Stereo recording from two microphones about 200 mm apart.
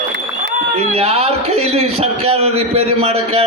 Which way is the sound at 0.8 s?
30° right (ahead or behind).